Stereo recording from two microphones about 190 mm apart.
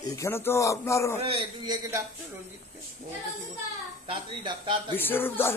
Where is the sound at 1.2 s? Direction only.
30° right (ahead or behind).